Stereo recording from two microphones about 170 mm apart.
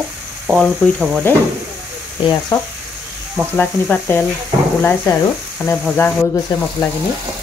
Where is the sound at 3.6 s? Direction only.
10° left (ahead or behind).